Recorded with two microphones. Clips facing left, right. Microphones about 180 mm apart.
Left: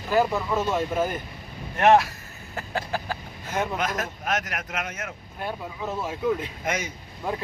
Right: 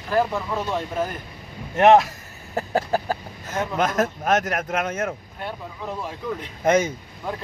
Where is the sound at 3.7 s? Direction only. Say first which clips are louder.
Right 6 dB; 45° right (ahead or behind).